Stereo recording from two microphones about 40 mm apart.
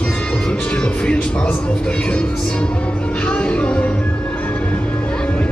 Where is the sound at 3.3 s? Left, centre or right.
Left.